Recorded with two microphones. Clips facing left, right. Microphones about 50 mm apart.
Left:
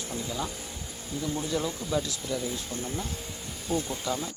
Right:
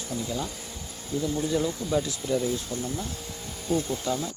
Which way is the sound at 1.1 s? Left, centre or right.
Centre.